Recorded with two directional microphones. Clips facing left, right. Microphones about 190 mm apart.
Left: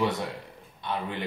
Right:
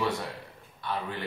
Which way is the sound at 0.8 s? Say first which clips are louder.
Left 1 dB; 20° left (ahead or behind).